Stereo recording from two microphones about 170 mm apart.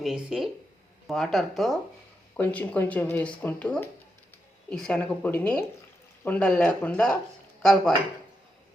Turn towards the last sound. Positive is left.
turn(degrees=0)  # may be behind; listen again after turning